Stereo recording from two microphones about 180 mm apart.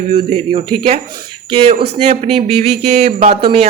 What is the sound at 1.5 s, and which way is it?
A man's voice, 30° right (ahead or behind).